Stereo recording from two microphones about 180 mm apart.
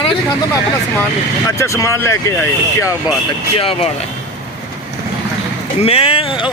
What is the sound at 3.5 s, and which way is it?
Speech, 30° left (ahead or behind).